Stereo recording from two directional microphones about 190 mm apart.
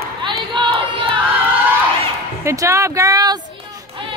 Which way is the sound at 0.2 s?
25° right (ahead or behind).